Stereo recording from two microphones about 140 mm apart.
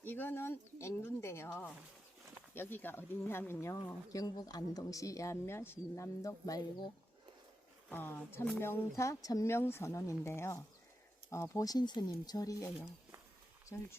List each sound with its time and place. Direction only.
0.0 s a woman's voice: 15° left (ahead or behind); by 6.9 s 30° left (ahead or behind)
7.9 s a woman's voice: 15° left (ahead or behind)